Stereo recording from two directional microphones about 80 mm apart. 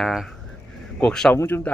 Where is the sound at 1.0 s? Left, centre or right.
Centre.